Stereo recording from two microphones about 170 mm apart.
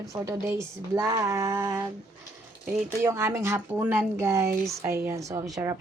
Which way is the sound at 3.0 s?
15° right (ahead or behind).